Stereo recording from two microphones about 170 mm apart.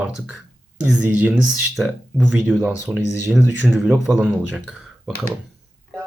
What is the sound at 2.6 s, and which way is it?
Speech, 10° right (ahead or behind).